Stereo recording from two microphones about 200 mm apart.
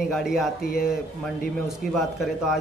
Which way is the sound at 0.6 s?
50° left (ahead or behind).